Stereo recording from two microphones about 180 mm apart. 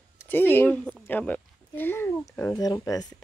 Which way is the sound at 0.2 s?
10° left (ahead or behind).